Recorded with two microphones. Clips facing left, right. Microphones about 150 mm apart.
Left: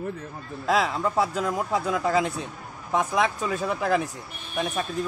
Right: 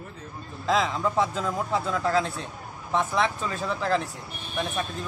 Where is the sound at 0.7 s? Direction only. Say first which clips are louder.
Left 1 dB; 5° left (ahead or behind).